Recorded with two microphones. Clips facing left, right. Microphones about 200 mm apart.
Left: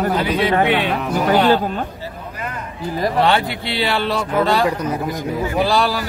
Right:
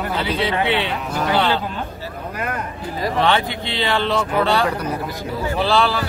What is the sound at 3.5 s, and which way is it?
Speech, 10° left (ahead or behind).